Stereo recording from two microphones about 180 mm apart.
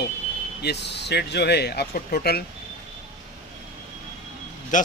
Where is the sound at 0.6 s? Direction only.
70° left (ahead or behind).